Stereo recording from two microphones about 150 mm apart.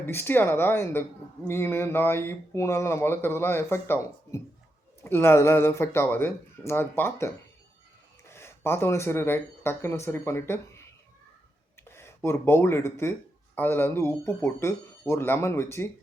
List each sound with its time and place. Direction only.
0.0 s speech: 15° left (ahead or behind)
8.3 s speech: 15° left (ahead or behind)
11.9 s speech: 15° left (ahead or behind)